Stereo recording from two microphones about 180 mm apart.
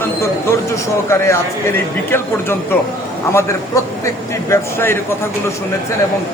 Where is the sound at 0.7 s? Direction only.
15° left (ahead or behind).